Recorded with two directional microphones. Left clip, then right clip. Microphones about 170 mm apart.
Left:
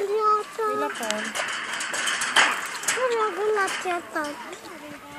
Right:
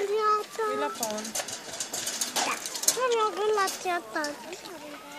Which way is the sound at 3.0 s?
25° left (ahead or behind).